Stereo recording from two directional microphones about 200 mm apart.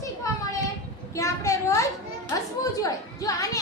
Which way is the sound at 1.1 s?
15° left (ahead or behind).